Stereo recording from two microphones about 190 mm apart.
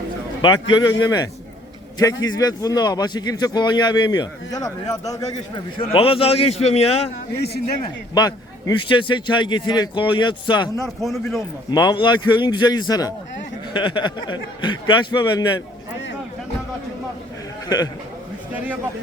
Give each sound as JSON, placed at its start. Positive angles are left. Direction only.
{"t": 0.7, "sound": "a man's voice", "side_deg": 20}
{"t": 7.8, "sound": "a man's voice", "side_deg": 20}
{"t": 10.8, "sound": "a man's voice", "side_deg": 0}
{"t": 11.7, "sound": "a man's voice", "side_deg": 20}
{"t": 17.7, "sound": "a man's voice", "side_deg": 20}